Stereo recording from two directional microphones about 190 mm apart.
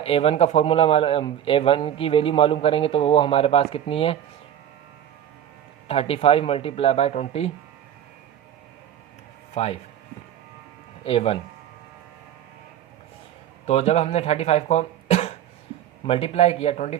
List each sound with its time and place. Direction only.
0.0 s speech: 30° left (ahead or behind)
5.9 s speech: 30° left (ahead or behind)
9.6 s speech: 35° left (ahead or behind)
11.0 s speech: 30° left (ahead or behind)
13.7 s speech: 35° left (ahead or behind)